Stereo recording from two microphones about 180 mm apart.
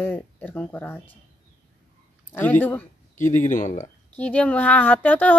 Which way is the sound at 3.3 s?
45° left (ahead or behind).